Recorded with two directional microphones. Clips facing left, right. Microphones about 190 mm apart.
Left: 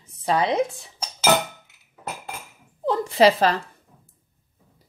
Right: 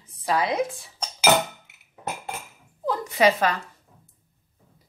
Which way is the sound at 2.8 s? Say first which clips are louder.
Left 3 dB; 30° left (ahead or behind).